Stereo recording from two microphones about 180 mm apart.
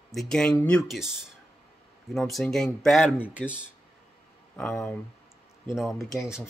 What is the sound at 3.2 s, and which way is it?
Speech, 5° right (ahead or behind).